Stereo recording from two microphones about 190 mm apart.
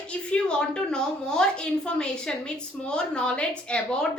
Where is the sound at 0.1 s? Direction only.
5° left (ahead or behind).